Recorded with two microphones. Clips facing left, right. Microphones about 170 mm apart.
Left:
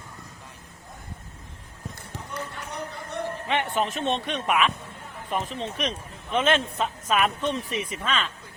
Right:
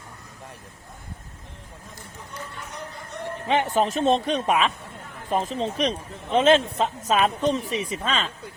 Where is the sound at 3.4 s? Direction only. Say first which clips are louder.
Right 6 dB; 35° right (ahead or behind).